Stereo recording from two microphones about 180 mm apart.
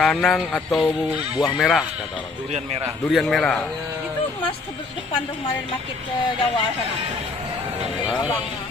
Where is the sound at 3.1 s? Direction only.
Centre (ahead or behind).